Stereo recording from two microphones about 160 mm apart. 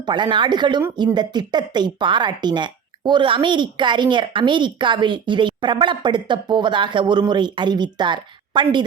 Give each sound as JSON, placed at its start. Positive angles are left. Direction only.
{"t": 0.0, "sound": "speech", "side_deg": -30}